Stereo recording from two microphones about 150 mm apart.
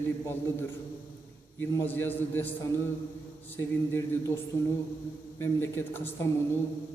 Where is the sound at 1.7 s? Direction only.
15° left (ahead or behind).